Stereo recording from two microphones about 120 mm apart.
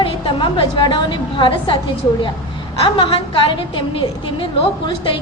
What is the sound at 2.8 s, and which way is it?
A woman's voice, 45° left (ahead or behind).